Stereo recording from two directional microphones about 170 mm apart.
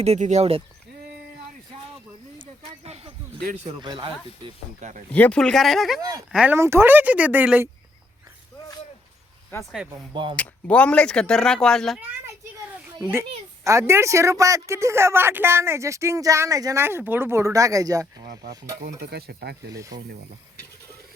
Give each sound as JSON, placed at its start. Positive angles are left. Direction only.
{"t": 0.0, "sound": "speech", "side_deg": -40}
{"t": 2.4, "sound": "a sound", "side_deg": -35}
{"t": 3.6, "sound": "speech", "side_deg": -30}
{"t": 4.8, "sound": "speech", "side_deg": -45}
{"t": 5.1, "sound": "speech", "side_deg": 5}
{"t": 9.9, "sound": "speech", "side_deg": -30}
{"t": 10.3, "sound": "speech", "side_deg": 10}
{"t": 13.0, "sound": "speech", "side_deg": -15}
{"t": 18.8, "sound": "stir", "side_deg": -65}
{"t": 19.7, "sound": "speech", "side_deg": -20}